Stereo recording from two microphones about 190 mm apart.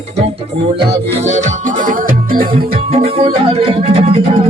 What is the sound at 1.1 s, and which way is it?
Music, 35° right (ahead or behind).